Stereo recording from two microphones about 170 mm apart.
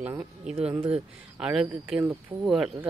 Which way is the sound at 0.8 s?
35° right (ahead or behind).